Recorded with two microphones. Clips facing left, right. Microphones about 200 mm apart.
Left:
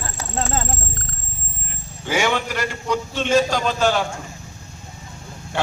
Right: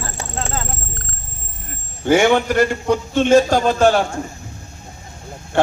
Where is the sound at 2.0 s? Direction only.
55° right (ahead or behind).